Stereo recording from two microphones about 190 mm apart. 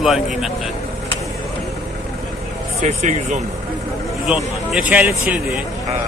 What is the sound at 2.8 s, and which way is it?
Speech, 40° right (ahead or behind).